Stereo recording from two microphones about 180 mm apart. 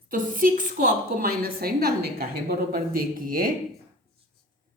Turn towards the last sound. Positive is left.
turn(degrees=-50)  # may be behind; listen again after turning